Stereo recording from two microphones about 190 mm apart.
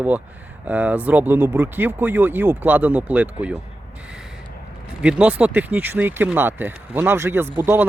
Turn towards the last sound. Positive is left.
turn(degrees=-10)  # may be behind; listen again after turning